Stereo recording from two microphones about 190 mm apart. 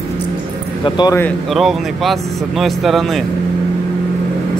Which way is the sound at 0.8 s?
25° left (ahead or behind).